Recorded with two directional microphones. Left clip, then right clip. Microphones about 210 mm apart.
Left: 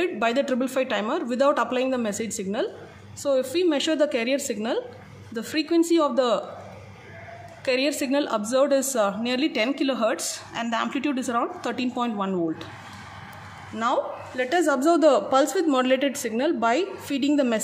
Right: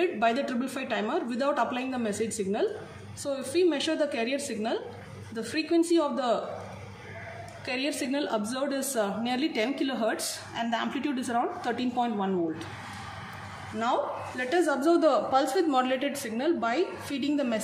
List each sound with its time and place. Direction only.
0.0 s a woman's voice: 55° left (ahead or behind)
7.6 s a woman's voice: 55° left (ahead or behind)
13.7 s a woman's voice: 55° left (ahead or behind)